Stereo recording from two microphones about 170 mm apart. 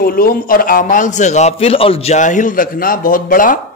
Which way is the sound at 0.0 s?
60° left (ahead or behind).